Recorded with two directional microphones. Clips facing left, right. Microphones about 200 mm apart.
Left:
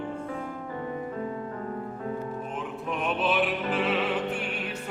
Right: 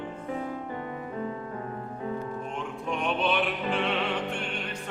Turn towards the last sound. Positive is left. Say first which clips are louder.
# left 2 dB
turn(degrees=5)  # may be behind; listen again after turning